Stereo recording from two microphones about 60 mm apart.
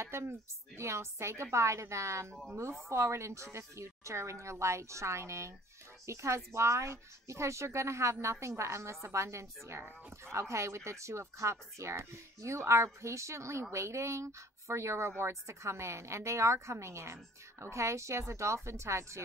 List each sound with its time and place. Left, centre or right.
0.0 s a woman's voice: right